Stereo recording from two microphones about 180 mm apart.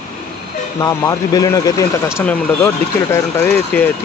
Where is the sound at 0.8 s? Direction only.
20° left (ahead or behind).